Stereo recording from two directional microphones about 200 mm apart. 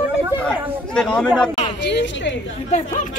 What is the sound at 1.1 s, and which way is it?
Speech, 5° left (ahead or behind).